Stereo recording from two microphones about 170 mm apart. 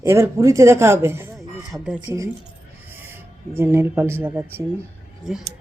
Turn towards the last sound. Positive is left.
turn(degrees=0)  # may be behind; listen again after turning